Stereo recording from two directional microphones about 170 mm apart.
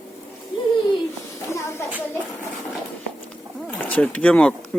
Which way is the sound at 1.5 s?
15° left (ahead or behind).